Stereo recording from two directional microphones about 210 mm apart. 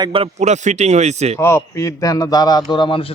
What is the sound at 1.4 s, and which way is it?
A man's voice, 10° left (ahead or behind).